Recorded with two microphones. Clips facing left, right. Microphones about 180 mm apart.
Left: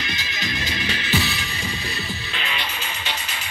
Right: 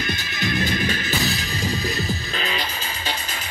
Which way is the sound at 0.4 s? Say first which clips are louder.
Right 6 dB; 55° right (ahead or behind).